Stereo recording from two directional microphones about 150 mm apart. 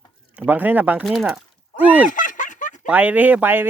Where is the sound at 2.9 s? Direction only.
10° right (ahead or behind).